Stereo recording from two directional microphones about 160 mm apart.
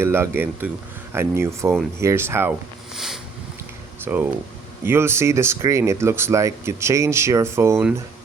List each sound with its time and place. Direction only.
0.0 s speech: 15° right (ahead or behind)
2.9 s a sound: centre (ahead or behind)
4.0 s speech: 10° right (ahead or behind)